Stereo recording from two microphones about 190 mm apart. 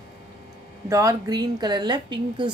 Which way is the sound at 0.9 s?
15° right (ahead or behind).